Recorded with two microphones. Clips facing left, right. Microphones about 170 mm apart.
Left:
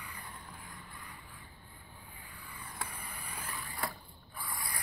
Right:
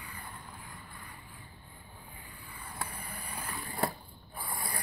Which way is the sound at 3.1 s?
30° right (ahead or behind).